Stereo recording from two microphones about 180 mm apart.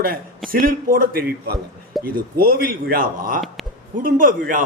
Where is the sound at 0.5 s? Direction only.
55° right (ahead or behind).